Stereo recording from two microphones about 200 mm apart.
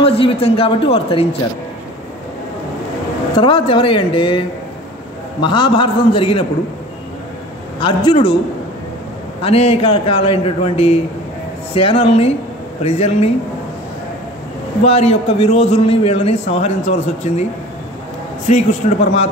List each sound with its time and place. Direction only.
0.0 s a man's voice: 30° left (ahead or behind)
3.3 s a man's voice: 25° left (ahead or behind)
5.4 s a man's voice: 25° left (ahead or behind)
7.8 s a man's voice: 25° left (ahead or behind)
9.4 s a man's voice: 30° left (ahead or behind)
14.9 s a man's voice: 30° left (ahead or behind)
18.5 s a man's voice: 35° left (ahead or behind)